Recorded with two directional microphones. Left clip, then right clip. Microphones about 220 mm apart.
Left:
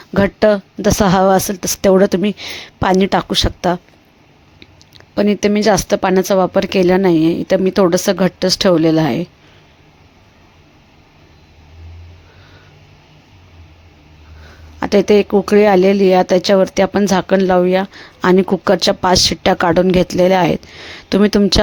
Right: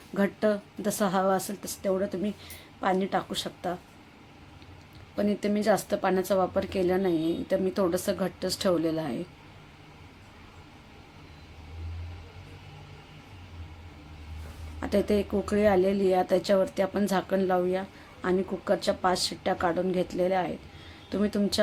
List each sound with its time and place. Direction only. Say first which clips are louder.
0.1 s a woman's voice: left 14 dB; 40° left (ahead or behind)
5.1 s speech: left 14 dB; 40° left (ahead or behind)
14.8 s speech: left 15 dB; 40° left (ahead or behind)